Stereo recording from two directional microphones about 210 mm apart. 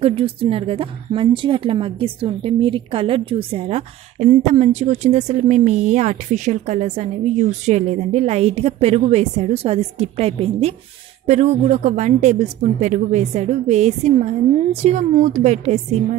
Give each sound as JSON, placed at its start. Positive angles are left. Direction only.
{"t": 0.0, "sound": "a woman's voice", "side_deg": -25}